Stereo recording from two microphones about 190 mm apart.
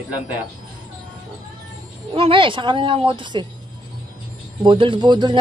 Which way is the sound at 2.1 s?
30° right (ahead or behind).